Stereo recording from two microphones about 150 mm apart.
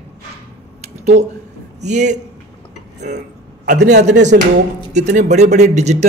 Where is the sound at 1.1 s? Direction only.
50° right (ahead or behind).